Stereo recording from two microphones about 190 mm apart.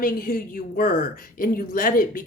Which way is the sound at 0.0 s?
50° left (ahead or behind).